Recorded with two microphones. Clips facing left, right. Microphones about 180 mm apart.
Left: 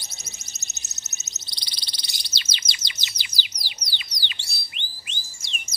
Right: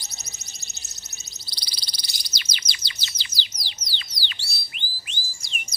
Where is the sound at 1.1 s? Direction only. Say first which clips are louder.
Right 1 dB; 20° left (ahead or behind).